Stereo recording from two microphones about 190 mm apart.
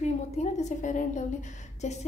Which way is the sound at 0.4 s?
35° left (ahead or behind).